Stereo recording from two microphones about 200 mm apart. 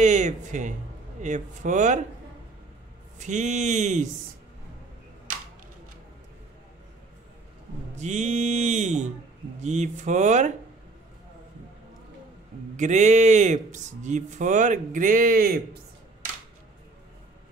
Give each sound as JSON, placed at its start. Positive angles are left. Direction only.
{"t": 0.0, "sound": "speech", "side_deg": -35}
{"t": 3.2, "sound": "speech", "side_deg": -35}
{"t": 8.0, "sound": "speech", "side_deg": -35}
{"t": 12.7, "sound": "speech", "side_deg": -35}